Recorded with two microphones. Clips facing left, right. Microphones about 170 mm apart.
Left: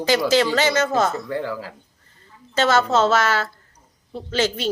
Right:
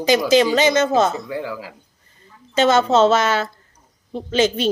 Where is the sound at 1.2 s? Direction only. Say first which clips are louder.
Left 1 dB; 10° right (ahead or behind).